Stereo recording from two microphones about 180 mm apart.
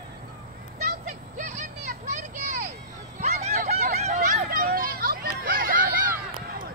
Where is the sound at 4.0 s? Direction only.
40° right (ahead or behind).